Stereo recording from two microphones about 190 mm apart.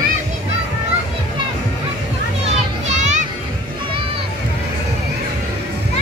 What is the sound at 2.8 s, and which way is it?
Children playing, 40° right (ahead or behind).